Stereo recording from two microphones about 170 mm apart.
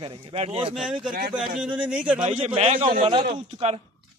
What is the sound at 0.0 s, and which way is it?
Speech, 30° right (ahead or behind).